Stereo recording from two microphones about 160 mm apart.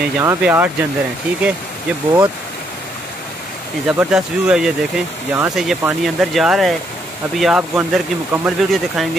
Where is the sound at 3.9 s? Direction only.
5° right (ahead or behind).